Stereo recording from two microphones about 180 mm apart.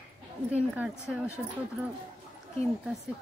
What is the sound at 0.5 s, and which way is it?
Speech, 10° right (ahead or behind).